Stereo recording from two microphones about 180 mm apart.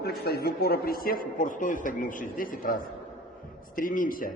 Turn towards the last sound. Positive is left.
turn(degrees=50)  # may be behind; listen again after turning